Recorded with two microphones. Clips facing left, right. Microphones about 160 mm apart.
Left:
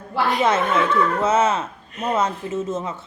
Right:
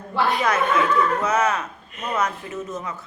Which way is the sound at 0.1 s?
25° left (ahead or behind).